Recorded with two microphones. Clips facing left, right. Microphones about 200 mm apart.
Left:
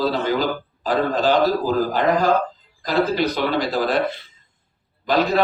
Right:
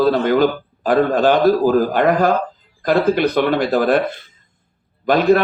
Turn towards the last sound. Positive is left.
turn(degrees=-55)  # may be behind; listen again after turning